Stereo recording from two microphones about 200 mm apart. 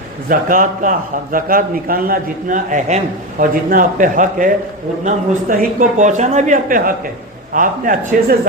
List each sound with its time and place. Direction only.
0.3 s a man's voice: 45° right (ahead or behind)